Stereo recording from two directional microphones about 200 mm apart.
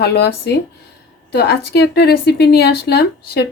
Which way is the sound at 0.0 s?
55° left (ahead or behind).